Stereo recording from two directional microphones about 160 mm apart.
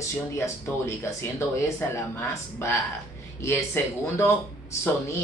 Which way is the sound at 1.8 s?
15° left (ahead or behind).